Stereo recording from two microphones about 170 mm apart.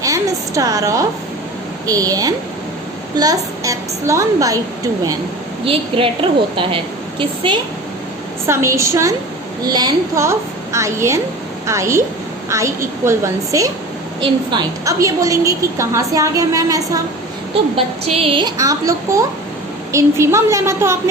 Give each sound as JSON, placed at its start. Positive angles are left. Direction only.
{"t": 0.0, "sound": "a woman's voice", "side_deg": -20}
{"t": 5.6, "sound": "a woman's voice", "side_deg": -30}
{"t": 8.4, "sound": "a woman's voice", "side_deg": -15}
{"t": 17.5, "sound": "a woman's voice", "side_deg": -35}